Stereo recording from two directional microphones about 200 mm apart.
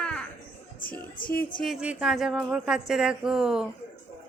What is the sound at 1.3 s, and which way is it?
A woman's voice, centre (ahead or behind).